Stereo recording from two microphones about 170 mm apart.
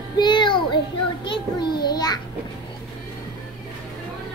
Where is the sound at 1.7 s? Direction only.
65° left (ahead or behind).